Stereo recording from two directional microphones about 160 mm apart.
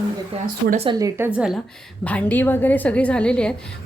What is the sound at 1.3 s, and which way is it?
Speech, 5° right (ahead or behind).